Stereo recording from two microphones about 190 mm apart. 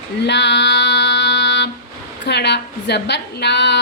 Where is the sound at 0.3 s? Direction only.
65° left (ahead or behind).